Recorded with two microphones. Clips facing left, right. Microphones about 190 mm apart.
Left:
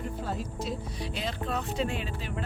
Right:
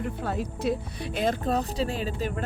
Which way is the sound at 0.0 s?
60° right (ahead or behind).